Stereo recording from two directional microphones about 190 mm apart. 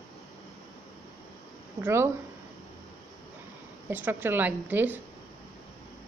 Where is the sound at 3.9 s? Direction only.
10° right (ahead or behind).